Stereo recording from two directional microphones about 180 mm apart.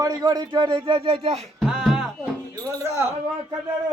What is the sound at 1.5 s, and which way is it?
Music, 5° right (ahead or behind).